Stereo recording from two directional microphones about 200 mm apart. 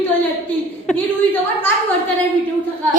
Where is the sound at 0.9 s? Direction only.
10° left (ahead or behind).